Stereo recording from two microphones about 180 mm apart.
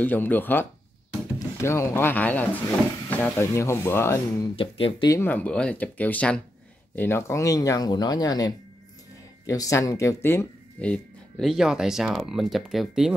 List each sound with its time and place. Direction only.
0.0 s speech: 10° left (ahead or behind)
4.6 s speech: 30° left (ahead or behind)
5.1 s speech: 10° left (ahead or behind)